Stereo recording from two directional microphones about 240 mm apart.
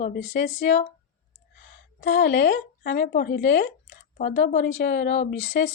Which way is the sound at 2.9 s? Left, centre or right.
Left.